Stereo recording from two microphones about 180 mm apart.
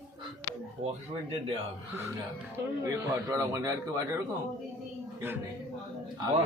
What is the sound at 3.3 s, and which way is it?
Speech, 20° right (ahead or behind).